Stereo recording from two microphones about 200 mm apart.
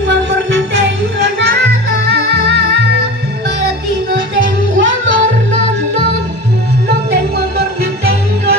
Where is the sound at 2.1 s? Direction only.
55° right (ahead or behind).